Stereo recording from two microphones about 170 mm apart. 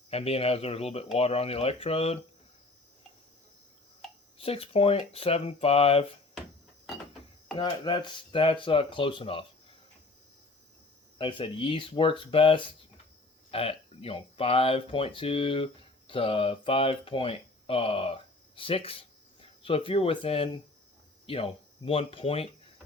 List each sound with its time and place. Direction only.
0.1 s speech: 35° left (ahead or behind)
4.4 s speech: 35° left (ahead or behind)
6.8 s mechanisms: centre (ahead or behind)
7.5 s speech: 25° left (ahead or behind)
11.2 s speech: 30° left (ahead or behind)